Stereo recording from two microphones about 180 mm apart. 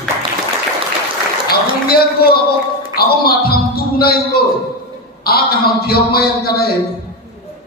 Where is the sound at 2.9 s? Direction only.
60° left (ahead or behind).